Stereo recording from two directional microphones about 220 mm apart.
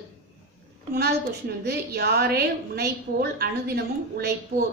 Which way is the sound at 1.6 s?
45° right (ahead or behind).